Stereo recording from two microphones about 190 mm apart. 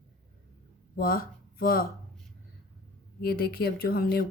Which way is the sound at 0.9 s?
50° left (ahead or behind).